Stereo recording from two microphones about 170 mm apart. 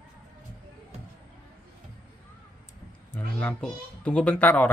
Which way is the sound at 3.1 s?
5° left (ahead or behind).